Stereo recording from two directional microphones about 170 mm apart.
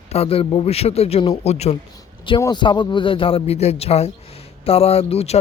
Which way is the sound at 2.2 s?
25° left (ahead or behind).